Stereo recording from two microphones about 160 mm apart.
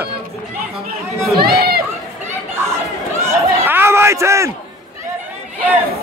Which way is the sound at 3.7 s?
15° right (ahead or behind).